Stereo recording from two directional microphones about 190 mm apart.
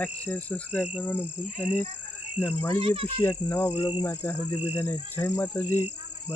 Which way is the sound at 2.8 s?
30° right (ahead or behind).